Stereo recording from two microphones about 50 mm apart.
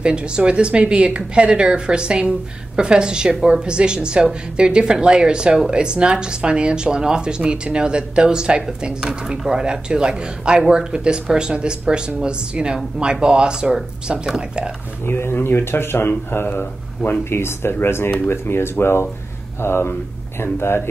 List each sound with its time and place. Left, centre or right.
0.0 s speech: centre
15.0 s speech: left